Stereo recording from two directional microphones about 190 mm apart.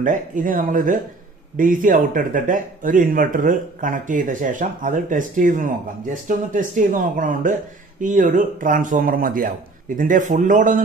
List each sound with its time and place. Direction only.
0.0 s speech: 45° right (ahead or behind)